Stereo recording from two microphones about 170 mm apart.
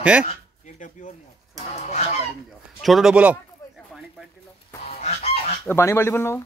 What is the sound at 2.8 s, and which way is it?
Speech, centre (ahead or behind).